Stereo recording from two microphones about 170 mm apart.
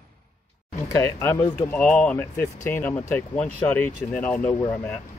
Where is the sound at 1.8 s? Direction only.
10° left (ahead or behind).